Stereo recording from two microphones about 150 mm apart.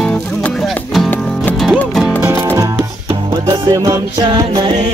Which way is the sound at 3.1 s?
30° right (ahead or behind).